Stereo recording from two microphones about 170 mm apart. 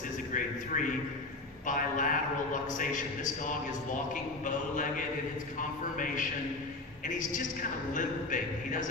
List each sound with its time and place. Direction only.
0.3 s a man's voice: 50° left (ahead or behind)
4.1 s a man's voice: 50° left (ahead or behind)